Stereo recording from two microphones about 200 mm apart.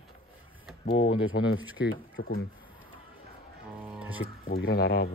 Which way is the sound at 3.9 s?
5° right (ahead or behind).